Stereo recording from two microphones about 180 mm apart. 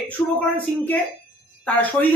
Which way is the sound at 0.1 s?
10° left (ahead or behind).